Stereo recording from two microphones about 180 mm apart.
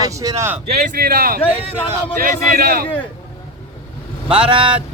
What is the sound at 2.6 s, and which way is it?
Speech, 55° right (ahead or behind).